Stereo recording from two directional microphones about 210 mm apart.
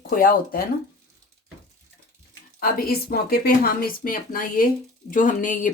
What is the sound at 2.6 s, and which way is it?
Speech, 45° left (ahead or behind).